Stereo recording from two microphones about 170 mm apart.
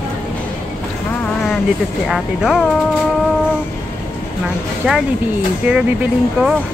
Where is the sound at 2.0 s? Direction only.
Centre (ahead or behind).